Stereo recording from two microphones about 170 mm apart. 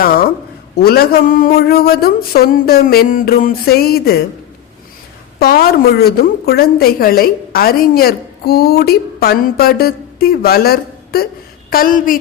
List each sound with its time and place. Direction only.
0.0 s a sound: 60° left (ahead or behind)
0.8 s a woman's voice: 65° left (ahead or behind)
5.4 s a woman's voice: 65° left (ahead or behind)